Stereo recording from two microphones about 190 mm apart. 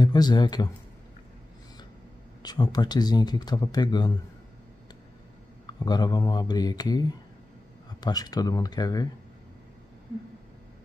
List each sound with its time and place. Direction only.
0.0 s speech: 20° left (ahead or behind)
2.4 s speech: 20° left (ahead or behind)
5.7 s speech: 20° left (ahead or behind)